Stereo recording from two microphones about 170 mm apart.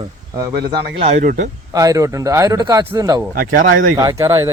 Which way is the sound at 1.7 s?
20° right (ahead or behind).